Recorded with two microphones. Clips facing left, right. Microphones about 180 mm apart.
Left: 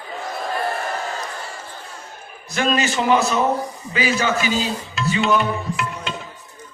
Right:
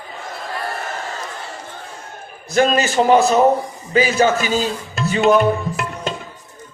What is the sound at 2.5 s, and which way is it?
A man's voice, 40° right (ahead or behind).